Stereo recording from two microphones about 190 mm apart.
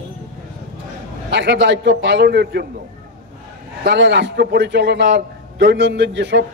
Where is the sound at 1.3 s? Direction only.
65° right (ahead or behind).